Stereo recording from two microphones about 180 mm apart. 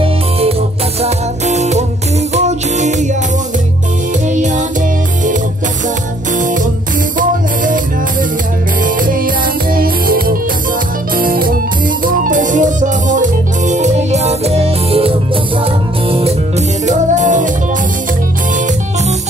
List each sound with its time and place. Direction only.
0.0 s music: 35° right (ahead or behind)
4.3 s music: 45° right (ahead or behind)
6.3 s music: 45° right (ahead or behind)
11.1 s organ: 50° right (ahead or behind)
12.0 s music: 45° right (ahead or behind)